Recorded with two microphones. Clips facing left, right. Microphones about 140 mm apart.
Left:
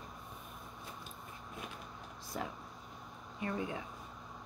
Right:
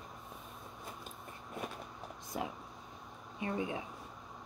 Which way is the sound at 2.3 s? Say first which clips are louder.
Right 2 dB; 20° right (ahead or behind).